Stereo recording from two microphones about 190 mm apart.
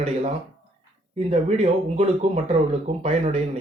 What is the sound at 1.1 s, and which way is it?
Speech, 35° right (ahead or behind).